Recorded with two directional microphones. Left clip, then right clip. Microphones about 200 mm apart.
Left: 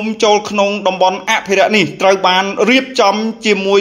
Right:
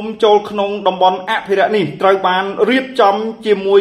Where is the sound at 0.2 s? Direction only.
25° left (ahead or behind).